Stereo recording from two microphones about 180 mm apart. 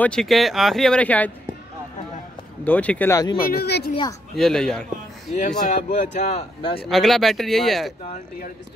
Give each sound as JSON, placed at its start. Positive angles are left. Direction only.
{"t": 0.0, "sound": "speech", "side_deg": 5}
{"t": 2.6, "sound": "speech", "side_deg": 10}
{"t": 3.3, "sound": "speech", "side_deg": 55}
{"t": 4.4, "sound": "speech", "side_deg": 5}
{"t": 5.7, "sound": "speech", "side_deg": 40}
{"t": 6.8, "sound": "speech", "side_deg": 0}